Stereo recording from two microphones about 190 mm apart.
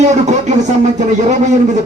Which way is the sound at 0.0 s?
35° right (ahead or behind).